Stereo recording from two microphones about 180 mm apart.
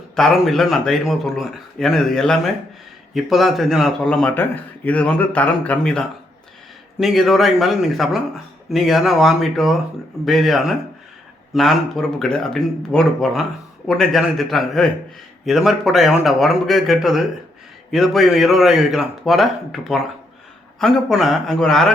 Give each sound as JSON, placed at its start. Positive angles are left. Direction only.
{"t": 0.2, "sound": "speech", "side_deg": 0}